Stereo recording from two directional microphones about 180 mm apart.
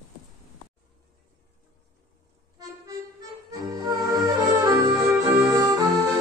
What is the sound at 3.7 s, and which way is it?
Music, 20° right (ahead or behind).